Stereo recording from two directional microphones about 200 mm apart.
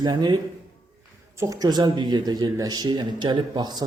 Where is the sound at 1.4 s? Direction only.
15° right (ahead or behind).